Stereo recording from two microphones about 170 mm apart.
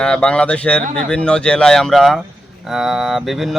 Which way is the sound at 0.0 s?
5° left (ahead or behind).